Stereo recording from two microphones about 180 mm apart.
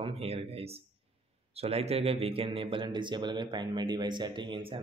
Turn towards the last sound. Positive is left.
turn(degrees=-25)  # may be behind; listen again after turning